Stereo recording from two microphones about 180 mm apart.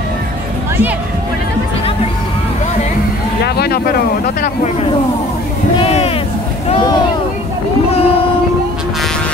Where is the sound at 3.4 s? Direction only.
65° left (ahead or behind).